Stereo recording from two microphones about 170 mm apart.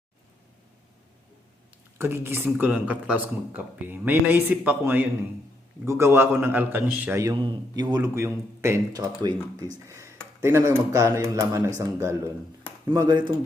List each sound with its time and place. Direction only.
2.0 s speech: 15° right (ahead or behind)
7.4 s speech: 25° right (ahead or behind)